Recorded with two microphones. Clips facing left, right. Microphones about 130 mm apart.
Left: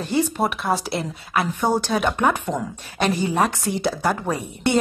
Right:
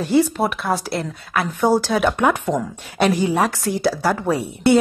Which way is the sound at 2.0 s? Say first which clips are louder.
Right 3 dB; 10° right (ahead or behind).